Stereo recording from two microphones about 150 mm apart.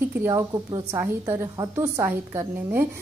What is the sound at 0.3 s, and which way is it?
A woman's voice, 25° right (ahead or behind).